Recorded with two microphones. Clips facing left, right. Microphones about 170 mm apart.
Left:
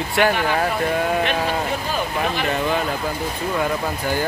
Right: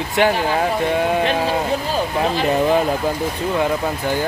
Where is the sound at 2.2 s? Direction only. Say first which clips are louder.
Right 6 dB; 30° right (ahead or behind).